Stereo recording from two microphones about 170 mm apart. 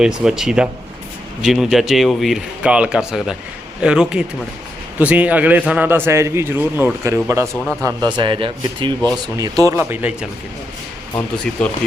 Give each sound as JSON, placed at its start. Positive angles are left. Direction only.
{"t": 0.0, "sound": "a man's voice", "side_deg": -5}
{"t": 7.5, "sound": "speech", "side_deg": 5}
{"t": 7.8, "sound": "a man's voice", "side_deg": -20}